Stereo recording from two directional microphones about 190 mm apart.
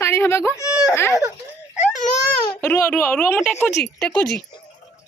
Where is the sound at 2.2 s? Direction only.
15° left (ahead or behind).